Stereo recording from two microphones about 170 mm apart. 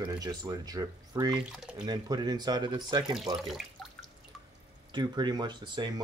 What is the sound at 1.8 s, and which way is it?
Speech, 25° right (ahead or behind).